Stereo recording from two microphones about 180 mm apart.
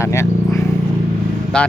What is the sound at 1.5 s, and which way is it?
Speech, 5° left (ahead or behind).